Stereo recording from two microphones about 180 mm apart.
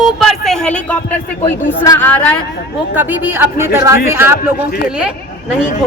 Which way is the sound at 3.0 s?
10° right (ahead or behind).